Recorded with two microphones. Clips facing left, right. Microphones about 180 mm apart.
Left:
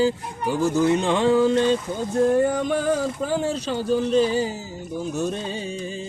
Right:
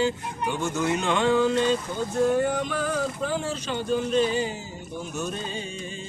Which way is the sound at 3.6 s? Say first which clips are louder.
Left 4 dB; 35° left (ahead or behind).